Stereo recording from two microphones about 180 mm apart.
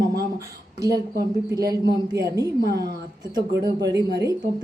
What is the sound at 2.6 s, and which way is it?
Speech, 60° right (ahead or behind).